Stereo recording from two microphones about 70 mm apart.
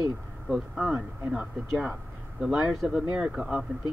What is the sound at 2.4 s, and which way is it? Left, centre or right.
Speech, centre.